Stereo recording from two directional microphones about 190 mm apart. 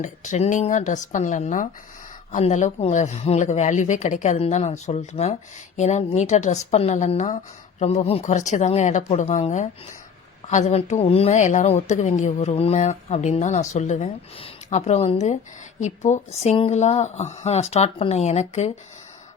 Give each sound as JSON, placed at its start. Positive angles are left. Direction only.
{"t": 0.0, "sound": "speech", "side_deg": 40}